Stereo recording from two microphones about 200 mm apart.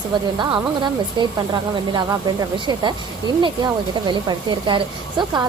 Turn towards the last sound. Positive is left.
turn(degrees=-20)  # may be behind; listen again after turning